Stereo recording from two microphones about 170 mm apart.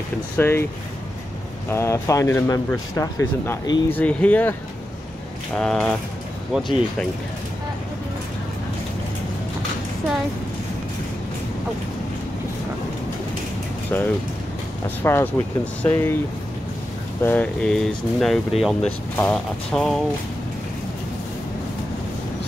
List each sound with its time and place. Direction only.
0.4 s speech: 15° left (ahead or behind)
1.7 s speech: 15° left (ahead or behind)
5.6 s speech: 5° left (ahead or behind)
15.0 s speech: 15° left (ahead or behind)
17.2 s speech: 10° left (ahead or behind)